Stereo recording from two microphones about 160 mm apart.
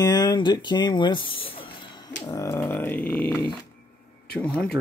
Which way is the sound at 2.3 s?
15° left (ahead or behind).